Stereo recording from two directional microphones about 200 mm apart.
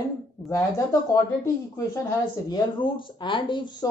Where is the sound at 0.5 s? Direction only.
15° left (ahead or behind).